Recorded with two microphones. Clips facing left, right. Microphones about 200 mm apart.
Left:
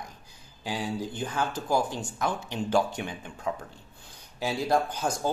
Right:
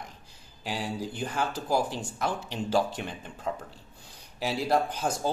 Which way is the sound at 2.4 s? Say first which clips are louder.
Left 1 dB; 30° right (ahead or behind).